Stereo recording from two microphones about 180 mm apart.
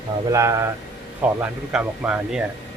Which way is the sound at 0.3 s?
15° right (ahead or behind).